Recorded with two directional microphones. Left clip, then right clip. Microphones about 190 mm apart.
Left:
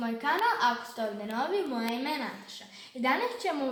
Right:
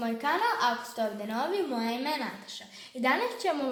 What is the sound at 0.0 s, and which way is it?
A woman's voice, 60° right (ahead or behind).